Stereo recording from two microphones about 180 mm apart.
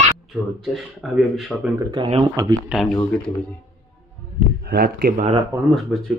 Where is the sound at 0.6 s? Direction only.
Centre (ahead or behind).